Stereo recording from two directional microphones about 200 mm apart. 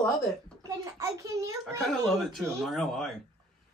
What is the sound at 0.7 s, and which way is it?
Speech, 15° right (ahead or behind).